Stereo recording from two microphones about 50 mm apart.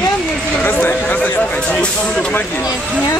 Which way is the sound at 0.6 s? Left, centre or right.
Left.